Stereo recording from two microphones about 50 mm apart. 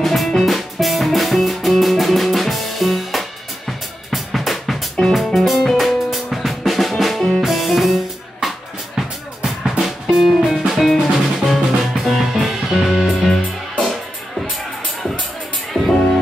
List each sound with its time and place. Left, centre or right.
0.0 s music: centre
8.9 s music: centre
15.8 s music: right